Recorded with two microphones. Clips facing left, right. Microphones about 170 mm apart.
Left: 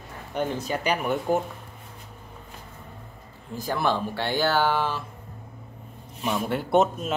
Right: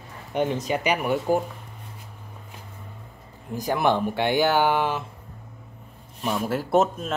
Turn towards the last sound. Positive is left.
turn(degrees=0)  # may be behind; listen again after turning